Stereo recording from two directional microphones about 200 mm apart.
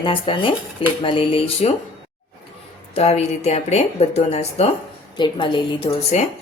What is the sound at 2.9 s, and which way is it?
Speech, 30° left (ahead or behind).